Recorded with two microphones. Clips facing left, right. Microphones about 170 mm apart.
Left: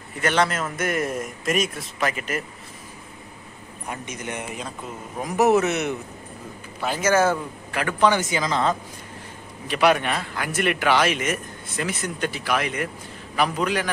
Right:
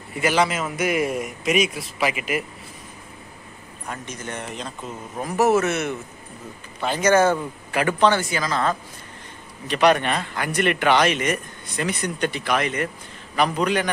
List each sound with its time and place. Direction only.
0.2 s speech: 5° right (ahead or behind)
4.1 s a man's voice: 10° left (ahead or behind)
6.8 s a man's voice: 5° left (ahead or behind)
9.7 s speech: 5° left (ahead or behind)